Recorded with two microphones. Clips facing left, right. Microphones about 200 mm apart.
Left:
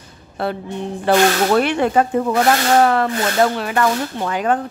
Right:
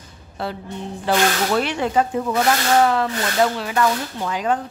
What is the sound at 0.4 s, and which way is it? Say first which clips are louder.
Speech: left 5 dB; 55° left (ahead or behind).